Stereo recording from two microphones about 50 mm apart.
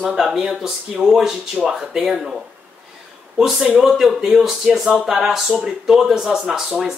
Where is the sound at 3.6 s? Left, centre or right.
Right.